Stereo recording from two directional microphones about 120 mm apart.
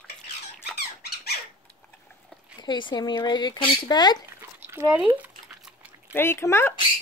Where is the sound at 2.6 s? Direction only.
40° left (ahead or behind).